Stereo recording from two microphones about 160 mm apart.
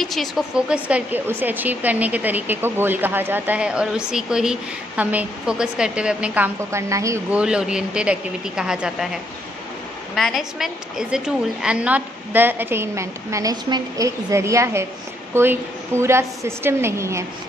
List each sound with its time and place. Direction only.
0.0 s a woman's voice: centre (ahead or behind); by 7.2 s 20° right (ahead or behind)
7.2 s a woman's voice: 5° right (ahead or behind)